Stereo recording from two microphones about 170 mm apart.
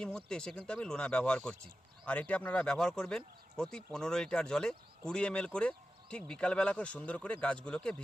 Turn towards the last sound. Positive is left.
turn(degrees=5)  # may be behind; listen again after turning